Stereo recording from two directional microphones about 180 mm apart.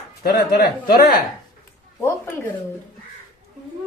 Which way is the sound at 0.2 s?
55° left (ahead or behind).